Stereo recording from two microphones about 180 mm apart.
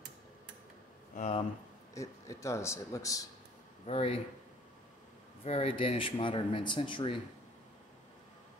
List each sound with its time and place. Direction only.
1.1 s speech: 40° left (ahead or behind)
2.0 s speech: 15° left (ahead or behind)
3.8 s speech: 35° left (ahead or behind)
5.4 s speech: 35° left (ahead or behind)